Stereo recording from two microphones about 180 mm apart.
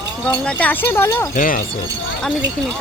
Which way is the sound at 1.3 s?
50° left (ahead or behind).